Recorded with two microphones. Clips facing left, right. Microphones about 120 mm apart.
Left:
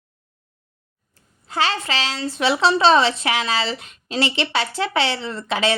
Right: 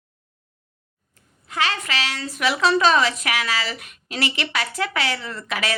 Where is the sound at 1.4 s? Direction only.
30° left (ahead or behind).